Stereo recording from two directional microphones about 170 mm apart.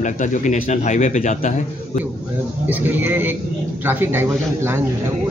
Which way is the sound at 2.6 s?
10° right (ahead or behind).